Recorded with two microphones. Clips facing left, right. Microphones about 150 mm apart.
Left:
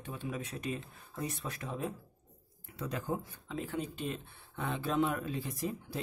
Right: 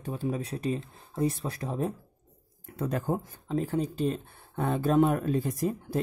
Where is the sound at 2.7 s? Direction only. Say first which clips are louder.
Right 7 dB; 50° right (ahead or behind).